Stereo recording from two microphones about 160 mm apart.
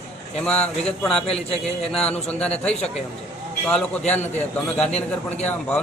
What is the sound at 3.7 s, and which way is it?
A man's voice, 5° left (ahead or behind).